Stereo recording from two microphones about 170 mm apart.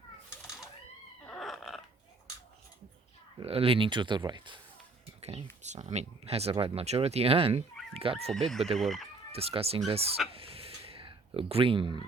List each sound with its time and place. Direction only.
0.4 s a sound: 5° right (ahead or behind)
3.4 s speech: 35° right (ahead or behind)
5.2 s speech: 40° right (ahead or behind)
8.3 s speech: centre (ahead or behind)
9.3 s speech: 35° right (ahead or behind)
10.3 s a sound: 35° right (ahead or behind)